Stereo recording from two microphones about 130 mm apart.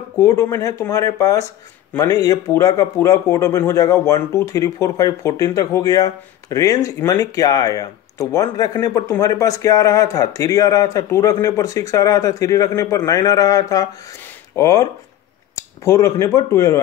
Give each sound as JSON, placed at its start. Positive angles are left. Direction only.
{"t": 0.2, "sound": "speech", "side_deg": 25}
{"t": 14.2, "sound": "a sound", "side_deg": 20}
{"t": 15.8, "sound": "speech", "side_deg": 25}